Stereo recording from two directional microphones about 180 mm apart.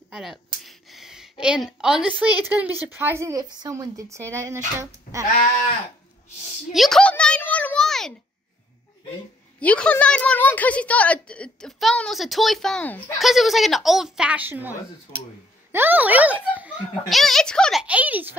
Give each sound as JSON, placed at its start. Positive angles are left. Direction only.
{"t": 0.1, "sound": "speech", "side_deg": 0}
{"t": 0.7, "sound": "a sound", "side_deg": 0}
{"t": 2.4, "sound": "speech", "side_deg": -10}
{"t": 6.7, "sound": "a sound", "side_deg": 0}
{"t": 9.6, "sound": "a woman's voice", "side_deg": 5}
{"t": 17.8, "sound": "speech", "side_deg": -10}